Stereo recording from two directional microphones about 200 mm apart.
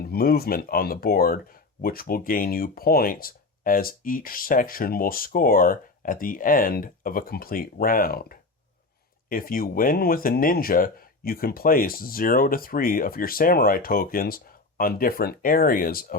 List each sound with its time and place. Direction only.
0.0 s speech: 50° left (ahead or behind)